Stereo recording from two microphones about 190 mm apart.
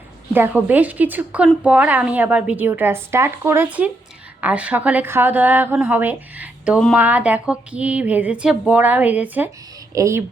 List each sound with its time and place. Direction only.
0.3 s a woman's voice: 10° right (ahead or behind)